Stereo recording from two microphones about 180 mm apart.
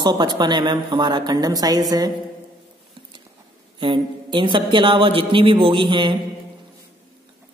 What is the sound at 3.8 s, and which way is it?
Speech, 30° right (ahead or behind).